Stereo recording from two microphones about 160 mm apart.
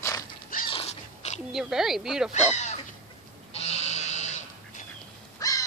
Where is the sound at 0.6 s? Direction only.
40° left (ahead or behind).